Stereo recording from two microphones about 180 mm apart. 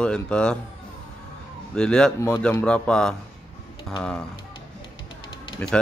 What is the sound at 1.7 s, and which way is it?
A man's voice, 5° left (ahead or behind).